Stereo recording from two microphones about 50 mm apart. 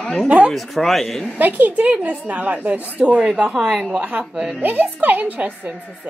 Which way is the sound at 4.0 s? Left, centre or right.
Right.